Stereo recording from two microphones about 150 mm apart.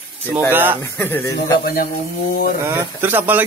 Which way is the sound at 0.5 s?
10° right (ahead or behind).